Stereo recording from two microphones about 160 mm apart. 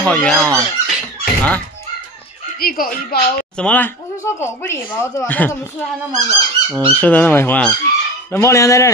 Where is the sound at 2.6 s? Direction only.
65° left (ahead or behind).